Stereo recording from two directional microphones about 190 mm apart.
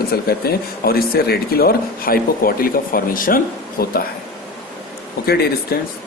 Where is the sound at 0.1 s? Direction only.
55° left (ahead or behind).